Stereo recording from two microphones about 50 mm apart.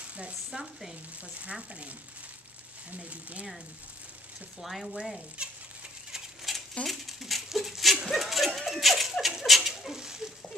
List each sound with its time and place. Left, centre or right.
0.0 s sizzle: right
0.5 s speech: centre
1.4 s speech: right
3.0 s speech: right
4.6 s a sound: centre
5.4 s speech: centre
6.1 s a sound: centre
6.8 s speech: centre
8.1 s a sound: centre
9.2 s rodents: centre